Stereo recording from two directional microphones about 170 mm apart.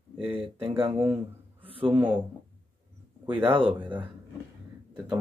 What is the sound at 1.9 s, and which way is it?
Speech, 10° right (ahead or behind).